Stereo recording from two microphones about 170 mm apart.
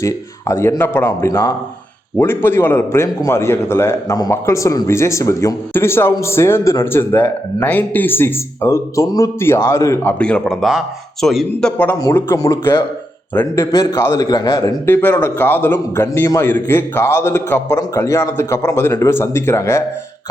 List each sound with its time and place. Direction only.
0.0 s a man's voice: 15° left (ahead or behind)